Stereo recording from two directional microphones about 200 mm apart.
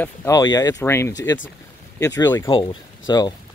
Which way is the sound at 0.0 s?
15° left (ahead or behind).